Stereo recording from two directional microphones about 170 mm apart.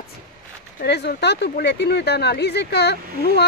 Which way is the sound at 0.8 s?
80° left.